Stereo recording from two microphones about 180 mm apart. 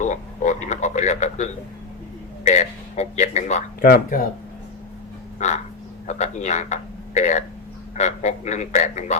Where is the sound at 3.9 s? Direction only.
55° left (ahead or behind).